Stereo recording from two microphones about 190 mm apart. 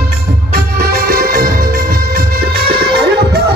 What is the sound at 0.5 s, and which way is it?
Music, 50° right (ahead or behind).